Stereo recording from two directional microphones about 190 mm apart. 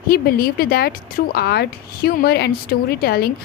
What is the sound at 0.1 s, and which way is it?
A woman's voice, 50° left (ahead or behind).